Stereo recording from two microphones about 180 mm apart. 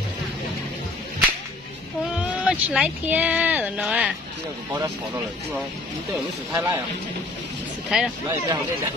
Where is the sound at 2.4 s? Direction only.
5° right (ahead or behind).